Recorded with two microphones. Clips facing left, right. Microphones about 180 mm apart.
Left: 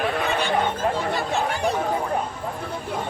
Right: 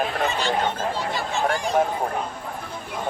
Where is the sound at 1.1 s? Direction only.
60° left (ahead or behind).